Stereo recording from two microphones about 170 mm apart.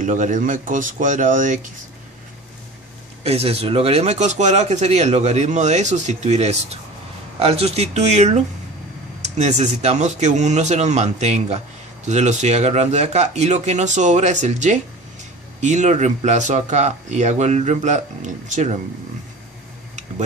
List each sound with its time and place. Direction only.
0.0 s speech: 50° right (ahead or behind)
3.3 s speech: 35° right (ahead or behind)